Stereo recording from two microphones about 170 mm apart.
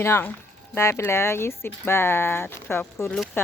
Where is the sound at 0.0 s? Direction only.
15° left (ahead or behind).